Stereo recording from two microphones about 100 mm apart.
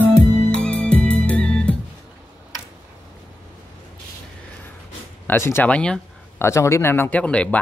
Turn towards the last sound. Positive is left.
turn(degrees=15)  # may be behind; listen again after turning